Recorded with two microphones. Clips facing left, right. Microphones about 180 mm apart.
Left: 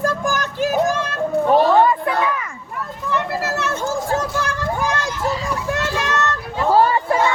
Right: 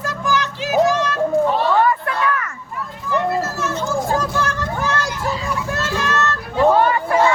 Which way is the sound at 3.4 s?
70° left (ahead or behind).